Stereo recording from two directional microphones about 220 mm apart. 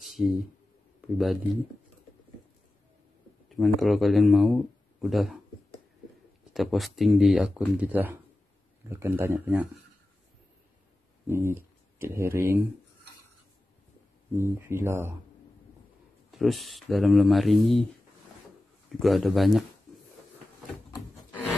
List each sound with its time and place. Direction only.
0.0 s a sound: centre (ahead or behind)
1.1 s speech: centre (ahead or behind)
3.4 s speech: centre (ahead or behind)
6.5 s speech: centre (ahead or behind)
11.2 s speech: 10° right (ahead or behind)
14.3 s speech: 10° right (ahead or behind)
16.3 s speech: centre (ahead or behind)
18.9 s speech: centre (ahead or behind)